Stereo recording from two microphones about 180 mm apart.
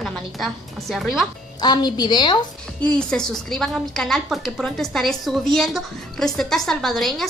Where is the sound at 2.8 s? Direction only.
5° left (ahead or behind).